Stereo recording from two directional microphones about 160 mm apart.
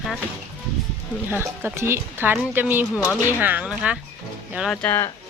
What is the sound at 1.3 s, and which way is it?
Speech, 10° right (ahead or behind).